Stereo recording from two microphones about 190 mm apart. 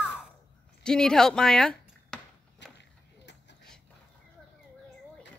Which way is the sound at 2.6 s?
65° left (ahead or behind).